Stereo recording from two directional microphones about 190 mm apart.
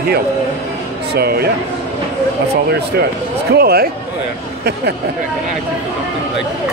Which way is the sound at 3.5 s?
55° right (ahead or behind).